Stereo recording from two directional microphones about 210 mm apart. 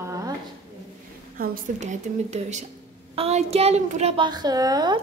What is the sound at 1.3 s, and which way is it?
A woman's voice, 40° right (ahead or behind).